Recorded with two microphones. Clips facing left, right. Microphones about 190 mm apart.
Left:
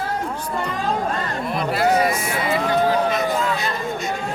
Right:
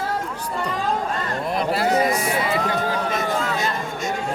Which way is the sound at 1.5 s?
35° right (ahead or behind).